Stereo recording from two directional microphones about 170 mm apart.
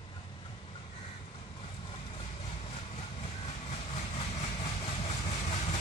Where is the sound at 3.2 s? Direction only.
40° left (ahead or behind).